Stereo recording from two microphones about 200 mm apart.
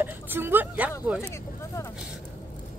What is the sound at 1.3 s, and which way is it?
Speech, 15° left (ahead or behind).